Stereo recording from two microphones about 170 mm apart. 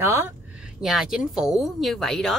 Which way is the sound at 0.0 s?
15° right (ahead or behind).